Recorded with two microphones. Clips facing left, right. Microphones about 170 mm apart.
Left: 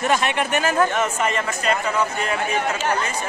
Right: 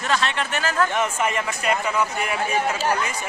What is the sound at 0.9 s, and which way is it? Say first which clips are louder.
Speech: left 1 dB; 15° right (ahead or behind).